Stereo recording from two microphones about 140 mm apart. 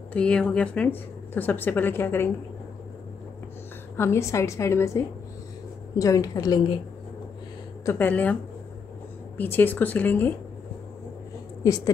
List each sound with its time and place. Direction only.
0.1 s a woman's voice: 5° left (ahead or behind)
3.9 s a woman's voice: 20° left (ahead or behind)
7.8 s a woman's voice: 15° left (ahead or behind)
9.4 s a woman's voice: 15° left (ahead or behind)
11.6 s a woman's voice: 25° left (ahead or behind)